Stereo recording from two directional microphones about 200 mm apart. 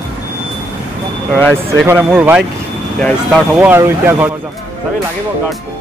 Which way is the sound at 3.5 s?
10° right (ahead or behind).